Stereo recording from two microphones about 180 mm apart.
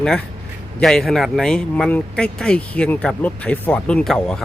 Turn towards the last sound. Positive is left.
turn(degrees=5)  # may be behind; listen again after turning